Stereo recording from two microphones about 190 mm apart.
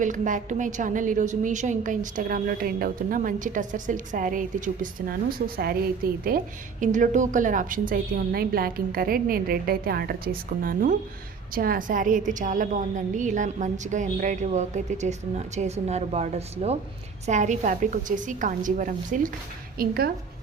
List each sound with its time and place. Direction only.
0.0 s a woman's voice: 40° right (ahead or behind)